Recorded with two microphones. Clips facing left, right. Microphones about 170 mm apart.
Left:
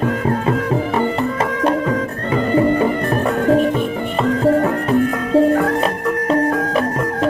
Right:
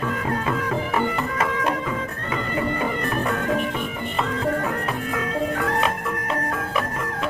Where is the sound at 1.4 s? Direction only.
35° left (ahead or behind).